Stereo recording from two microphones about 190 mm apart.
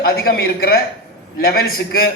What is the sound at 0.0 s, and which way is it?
A man's voice, 50° left (ahead or behind).